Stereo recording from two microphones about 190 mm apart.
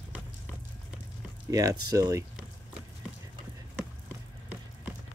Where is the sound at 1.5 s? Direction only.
20° right (ahead or behind).